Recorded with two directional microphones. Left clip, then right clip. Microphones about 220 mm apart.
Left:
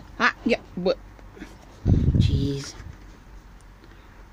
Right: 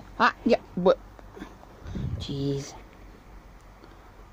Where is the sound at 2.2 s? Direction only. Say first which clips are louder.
Left 2 dB; 5° left (ahead or behind).